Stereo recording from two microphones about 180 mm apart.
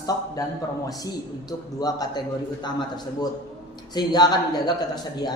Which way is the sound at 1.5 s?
20° left (ahead or behind).